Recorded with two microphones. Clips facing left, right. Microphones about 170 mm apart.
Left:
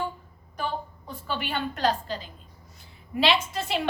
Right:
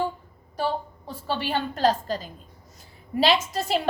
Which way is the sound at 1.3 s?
30° right (ahead or behind).